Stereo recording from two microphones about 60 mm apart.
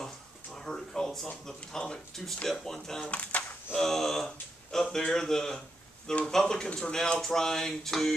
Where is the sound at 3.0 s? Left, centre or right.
Left.